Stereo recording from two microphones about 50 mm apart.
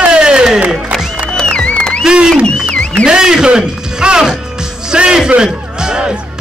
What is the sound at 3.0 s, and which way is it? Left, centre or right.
Music, centre.